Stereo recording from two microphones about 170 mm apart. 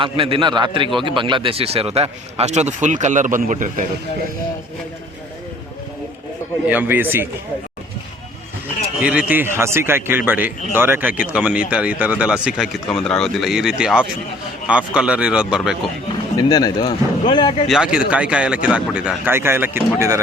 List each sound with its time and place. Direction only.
0.0 s a man's voice: 30° right (ahead or behind); by 3.8 s 50° right (ahead or behind)
6.7 s speech: 10° right (ahead or behind)
9.0 s speech: 10° right (ahead or behind)
16.4 s speech: 25° left (ahead or behind)
17.7 s speech: 5° right (ahead or behind)